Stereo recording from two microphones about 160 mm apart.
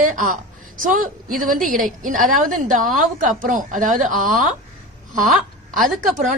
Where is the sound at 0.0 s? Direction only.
55° right (ahead or behind).